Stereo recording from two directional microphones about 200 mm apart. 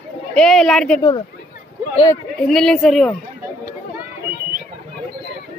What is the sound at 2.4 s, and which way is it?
Speech, 5° left (ahead or behind).